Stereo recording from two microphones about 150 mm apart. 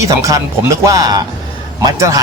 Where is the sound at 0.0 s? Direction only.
20° right (ahead or behind).